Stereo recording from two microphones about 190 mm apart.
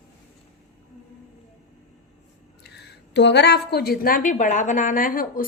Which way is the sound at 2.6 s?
65° left (ahead or behind).